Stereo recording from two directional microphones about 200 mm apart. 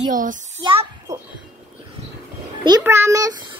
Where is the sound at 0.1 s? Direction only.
40° right (ahead or behind).